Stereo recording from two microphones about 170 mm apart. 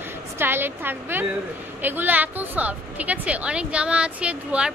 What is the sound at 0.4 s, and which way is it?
A woman's voice, 15° right (ahead or behind).